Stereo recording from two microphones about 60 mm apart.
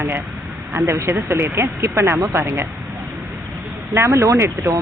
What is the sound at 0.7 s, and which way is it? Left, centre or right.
Speech, right.